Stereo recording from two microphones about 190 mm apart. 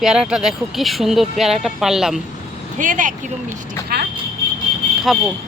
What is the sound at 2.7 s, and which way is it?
Speech, 45° right (ahead or behind).